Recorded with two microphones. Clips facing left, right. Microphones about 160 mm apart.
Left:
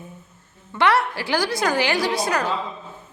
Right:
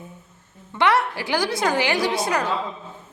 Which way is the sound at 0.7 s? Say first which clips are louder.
Even; 20° right (ahead or behind).